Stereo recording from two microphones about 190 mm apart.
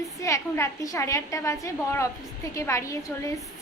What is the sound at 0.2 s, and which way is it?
A woman's voice, 15° left (ahead or behind).